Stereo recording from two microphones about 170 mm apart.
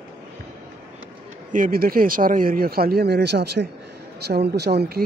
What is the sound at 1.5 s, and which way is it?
Speech, 55° right (ahead or behind).